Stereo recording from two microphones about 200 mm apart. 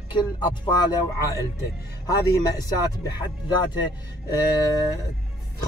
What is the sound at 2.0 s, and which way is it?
Speech, 20° left (ahead or behind).